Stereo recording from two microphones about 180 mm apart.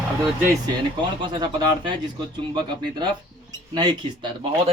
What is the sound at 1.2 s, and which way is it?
Speech, 25° right (ahead or behind).